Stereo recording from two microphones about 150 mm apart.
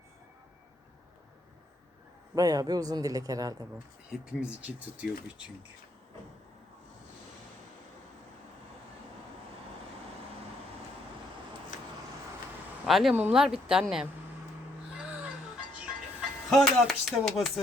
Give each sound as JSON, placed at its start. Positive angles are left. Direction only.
{"t": 2.3, "sound": "speech", "side_deg": -25}
{"t": 4.1, "sound": "speech", "side_deg": -5}
{"t": 12.8, "sound": "speech", "side_deg": 0}
{"t": 16.5, "sound": "speech", "side_deg": 0}